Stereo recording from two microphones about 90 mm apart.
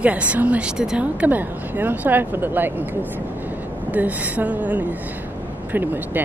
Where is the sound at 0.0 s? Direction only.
15° right (ahead or behind).